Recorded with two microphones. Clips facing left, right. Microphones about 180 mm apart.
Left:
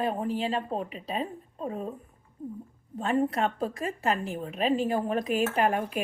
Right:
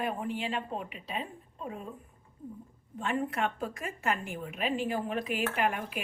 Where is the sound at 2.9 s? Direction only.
35° left (ahead or behind).